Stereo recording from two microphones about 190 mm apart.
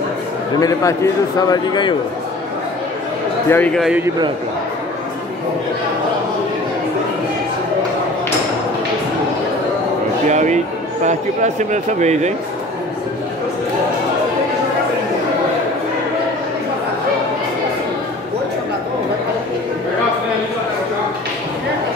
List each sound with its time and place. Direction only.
0.6 s a man's voice: 15° left (ahead or behind)
3.4 s speech: 10° left (ahead or behind)
10.3 s speech: 40° right (ahead or behind)